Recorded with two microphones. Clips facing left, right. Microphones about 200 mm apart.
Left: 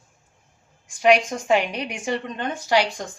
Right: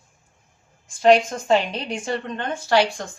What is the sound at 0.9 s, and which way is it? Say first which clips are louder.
A woman's voice: right 2 dB; 15° left (ahead or behind).